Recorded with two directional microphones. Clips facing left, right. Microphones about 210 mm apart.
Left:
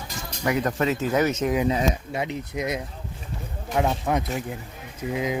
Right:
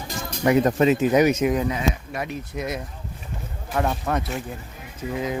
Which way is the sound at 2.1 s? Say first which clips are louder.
Left 1 dB; 20° left (ahead or behind).